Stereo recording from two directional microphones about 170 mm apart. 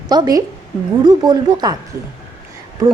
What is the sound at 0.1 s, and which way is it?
A woman's voice, 25° right (ahead or behind).